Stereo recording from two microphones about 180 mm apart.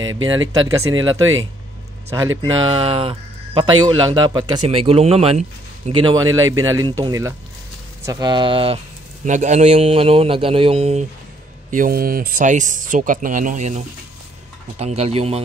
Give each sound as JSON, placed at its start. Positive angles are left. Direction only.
{"t": 0.5, "sound": "speech", "side_deg": -20}
{"t": 2.4, "sound": "speech", "side_deg": -30}
{"t": 9.2, "sound": "speech", "side_deg": -40}
{"t": 11.7, "sound": "speech", "side_deg": -50}